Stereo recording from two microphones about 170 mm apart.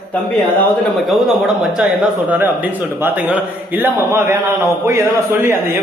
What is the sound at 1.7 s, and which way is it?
Speech, 5° right (ahead or behind).